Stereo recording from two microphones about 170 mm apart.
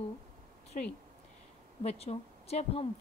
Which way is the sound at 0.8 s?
50° left (ahead or behind).